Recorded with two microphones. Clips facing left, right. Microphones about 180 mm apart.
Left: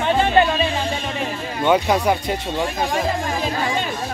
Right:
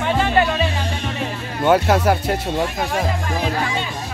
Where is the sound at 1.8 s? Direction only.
5° right (ahead or behind).